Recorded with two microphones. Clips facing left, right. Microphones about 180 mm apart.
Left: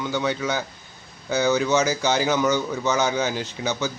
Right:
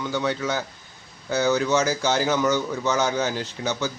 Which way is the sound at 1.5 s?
20° left (ahead or behind).